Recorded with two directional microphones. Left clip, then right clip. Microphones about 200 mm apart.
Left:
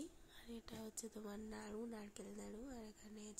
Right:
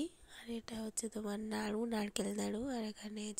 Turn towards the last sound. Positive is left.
turn(degrees=-40)  # may be behind; listen again after turning